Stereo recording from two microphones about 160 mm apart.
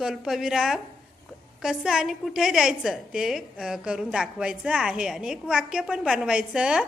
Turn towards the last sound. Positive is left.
turn(degrees=-5)  # may be behind; listen again after turning